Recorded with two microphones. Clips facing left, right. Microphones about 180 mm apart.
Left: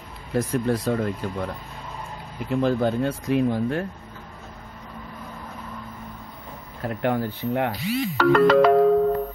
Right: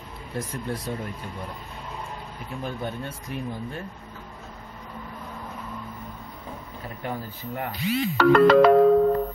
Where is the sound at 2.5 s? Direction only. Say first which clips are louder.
Left 11 dB; 90° left.